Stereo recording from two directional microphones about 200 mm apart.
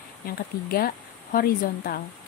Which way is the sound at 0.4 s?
45° left (ahead or behind).